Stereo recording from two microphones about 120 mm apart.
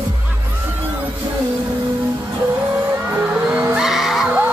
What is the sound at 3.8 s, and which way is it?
Music, centre (ahead or behind).